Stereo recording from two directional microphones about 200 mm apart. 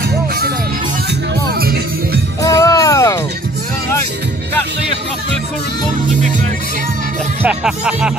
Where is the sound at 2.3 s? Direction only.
20° left (ahead or behind).